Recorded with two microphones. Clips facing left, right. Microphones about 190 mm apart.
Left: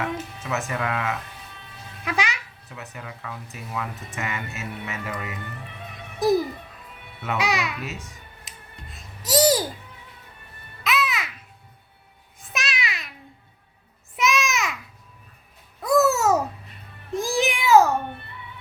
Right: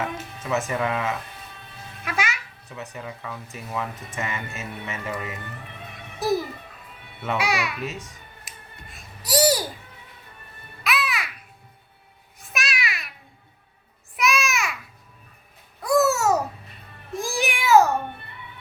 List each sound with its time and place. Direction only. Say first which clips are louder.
0.4 s speech: right 4 dB; centre (ahead or behind)
2.0 s a child's voice: left 1 dB; 20° left (ahead or behind)
2.6 s a child's voice: right 3 dB; centre (ahead or behind)
7.3 s a child's voice: even; 20° left (ahead or behind)
9.2 s a sound: left 1 dB; 10° right (ahead or behind)
10.8 s music: left 2 dB; 20° left (ahead or behind)
12.5 s a sound: even; 20° left (ahead or behind)
14.2 s a sound: left 1 dB; 20° left (ahead or behind)
15.8 s babbling: left 1 dB; 20° left (ahead or behind)
17.2 s meow: left 3 dB; 20° left (ahead or behind)